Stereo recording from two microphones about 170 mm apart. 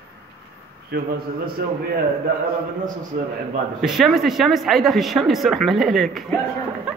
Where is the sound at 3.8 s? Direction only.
Centre (ahead or behind).